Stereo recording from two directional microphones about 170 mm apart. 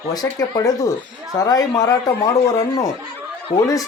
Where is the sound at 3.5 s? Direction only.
20° left (ahead or behind).